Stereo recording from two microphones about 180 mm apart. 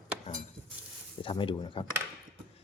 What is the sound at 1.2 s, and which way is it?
Speech, 30° left (ahead or behind).